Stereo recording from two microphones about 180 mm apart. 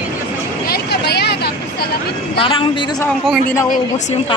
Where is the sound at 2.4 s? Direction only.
30° left (ahead or behind).